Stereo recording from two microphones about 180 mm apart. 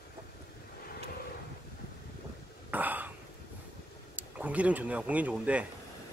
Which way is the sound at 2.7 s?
10° right (ahead or behind).